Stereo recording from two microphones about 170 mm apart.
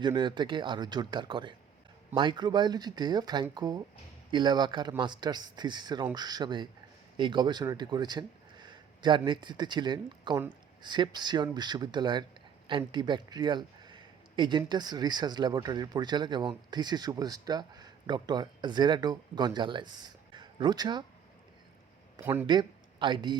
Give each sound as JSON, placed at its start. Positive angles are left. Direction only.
{"t": 0.0, "sound": "speech", "side_deg": -25}
{"t": 22.2, "sound": "speech", "side_deg": -15}
{"t": 22.4, "sound": "speech", "side_deg": -25}